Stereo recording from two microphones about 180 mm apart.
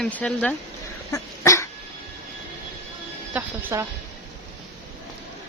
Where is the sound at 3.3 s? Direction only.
10° right (ahead or behind).